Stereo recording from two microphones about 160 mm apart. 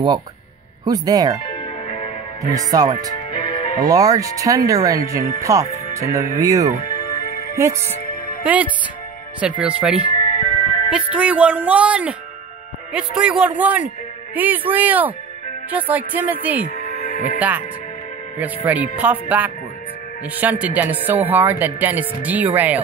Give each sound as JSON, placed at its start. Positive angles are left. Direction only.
{"t": 0.8, "sound": "speech", "side_deg": -25}
{"t": 1.5, "sound": "music", "side_deg": 45}
{"t": 2.5, "sound": "speech", "side_deg": -25}
{"t": 3.3, "sound": "music", "side_deg": 45}
{"t": 3.8, "sound": "speech", "side_deg": -20}
{"t": 7.2, "sound": "music", "side_deg": 70}
{"t": 7.5, "sound": "speech", "side_deg": -15}
{"t": 16.7, "sound": "music", "side_deg": 55}
{"t": 17.4, "sound": "speech", "side_deg": -10}